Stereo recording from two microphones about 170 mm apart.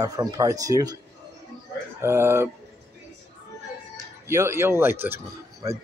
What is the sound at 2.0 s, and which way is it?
Speech, 15° right (ahead or behind).